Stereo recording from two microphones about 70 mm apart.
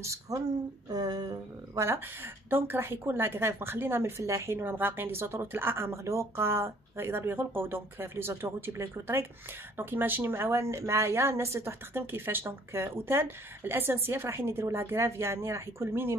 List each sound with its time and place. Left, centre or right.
0.0 s speech: right
0.8 s a sound: right
1.8 s a woman's voice: right
4.2 s speech: right
4.6 s a woman's voice: right